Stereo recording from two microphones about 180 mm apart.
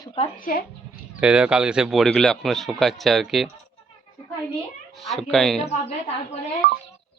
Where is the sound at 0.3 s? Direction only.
50° left (ahead or behind).